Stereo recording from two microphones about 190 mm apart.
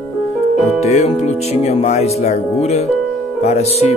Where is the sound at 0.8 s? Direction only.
35° left (ahead or behind).